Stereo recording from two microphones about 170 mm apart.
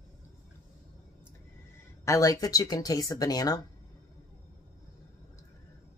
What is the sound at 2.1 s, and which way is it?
Speech, 20° left (ahead or behind).